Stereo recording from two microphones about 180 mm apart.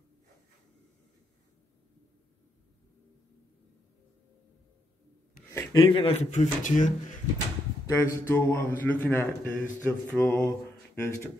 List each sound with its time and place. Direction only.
5.5 s a sound: 15° left (ahead or behind)
5.8 s speech: 30° left (ahead or behind)
7.8 s speech: 15° left (ahead or behind)